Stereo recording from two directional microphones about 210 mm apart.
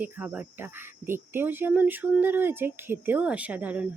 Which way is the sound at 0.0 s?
10° right (ahead or behind).